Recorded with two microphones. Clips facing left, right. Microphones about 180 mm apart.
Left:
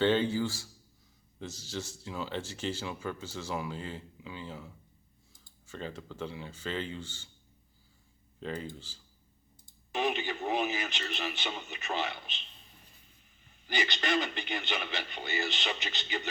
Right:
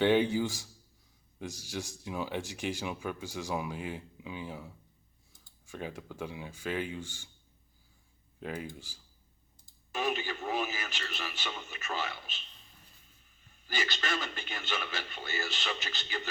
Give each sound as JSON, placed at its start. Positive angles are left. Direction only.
{"t": 0.0, "sound": "speech", "side_deg": -15}
{"t": 8.4, "sound": "speech", "side_deg": -10}
{"t": 10.0, "sound": "radio", "side_deg": 20}
{"t": 13.7, "sound": "speech", "side_deg": 20}